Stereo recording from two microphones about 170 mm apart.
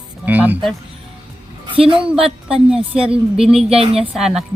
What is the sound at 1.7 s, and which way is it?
Speech, 30° right (ahead or behind).